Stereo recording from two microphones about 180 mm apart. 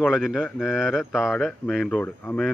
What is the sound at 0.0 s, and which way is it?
A man's voice, centre (ahead or behind).